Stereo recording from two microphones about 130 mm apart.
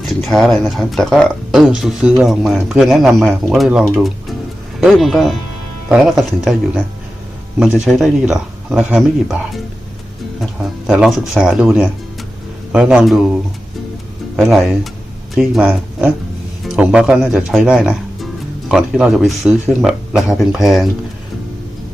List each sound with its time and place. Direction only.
0.0 s speech: centre (ahead or behind)
7.6 s speech: centre (ahead or behind)
10.4 s speech: centre (ahead or behind)
14.3 s speech: centre (ahead or behind)